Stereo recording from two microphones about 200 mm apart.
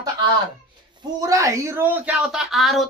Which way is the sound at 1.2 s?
15° right (ahead or behind).